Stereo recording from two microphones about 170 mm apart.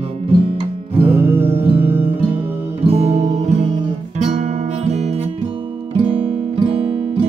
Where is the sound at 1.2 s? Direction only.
10° right (ahead or behind).